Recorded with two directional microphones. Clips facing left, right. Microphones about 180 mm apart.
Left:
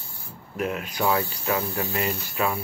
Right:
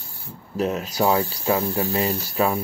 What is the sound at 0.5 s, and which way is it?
Speech, 35° right (ahead or behind).